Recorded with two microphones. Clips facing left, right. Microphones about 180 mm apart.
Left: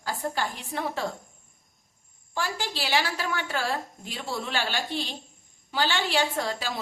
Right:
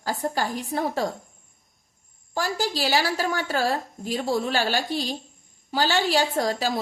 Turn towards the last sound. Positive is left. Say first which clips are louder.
# right 5 dB
turn(degrees=-40)  # may be behind; listen again after turning